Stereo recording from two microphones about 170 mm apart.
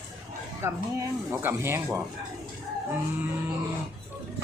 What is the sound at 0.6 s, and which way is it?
Speech, 15° right (ahead or behind).